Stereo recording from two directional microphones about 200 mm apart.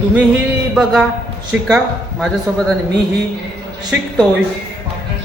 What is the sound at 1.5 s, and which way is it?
A man's voice, 5° right (ahead or behind).